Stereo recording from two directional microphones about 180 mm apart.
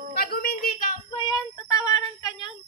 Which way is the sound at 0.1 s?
55° left (ahead or behind).